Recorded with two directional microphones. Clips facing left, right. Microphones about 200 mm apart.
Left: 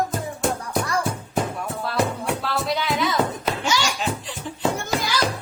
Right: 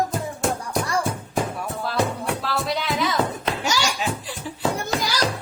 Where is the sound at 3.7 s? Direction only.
40° right (ahead or behind).